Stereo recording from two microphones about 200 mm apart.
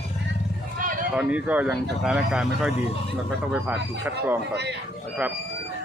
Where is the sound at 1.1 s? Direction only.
5° right (ahead or behind).